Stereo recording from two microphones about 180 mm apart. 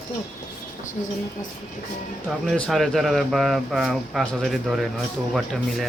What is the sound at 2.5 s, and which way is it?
Speech, centre (ahead or behind).